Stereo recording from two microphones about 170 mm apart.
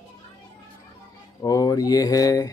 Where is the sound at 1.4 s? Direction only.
20° left (ahead or behind).